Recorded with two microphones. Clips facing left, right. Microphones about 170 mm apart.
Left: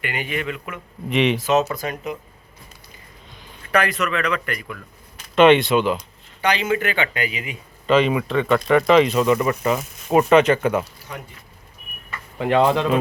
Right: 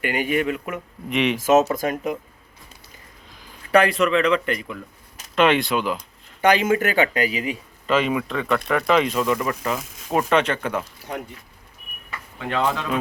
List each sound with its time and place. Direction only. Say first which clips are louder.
0.0 s speech: right 5 dB; 45° right (ahead or behind)
1.1 s speech: left 2 dB; centre (ahead or behind)
1.4 s speech: right 3 dB; 45° right (ahead or behind)
3.7 s speech: right 4 dB; 30° right (ahead or behind)
5.3 s speech: left 5 dB; centre (ahead or behind)
6.4 s speech: right 3 dB; 50° right (ahead or behind)
7.9 s speech: left 3 dB; centre (ahead or behind)
12.4 s speech: left 7 dB; 30° left (ahead or behind)